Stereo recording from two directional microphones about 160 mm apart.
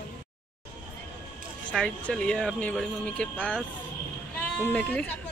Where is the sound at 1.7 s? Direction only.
5° left (ahead or behind).